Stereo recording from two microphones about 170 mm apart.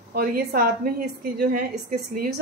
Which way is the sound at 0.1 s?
60° right (ahead or behind).